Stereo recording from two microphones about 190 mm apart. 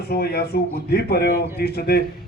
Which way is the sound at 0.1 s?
55° left (ahead or behind).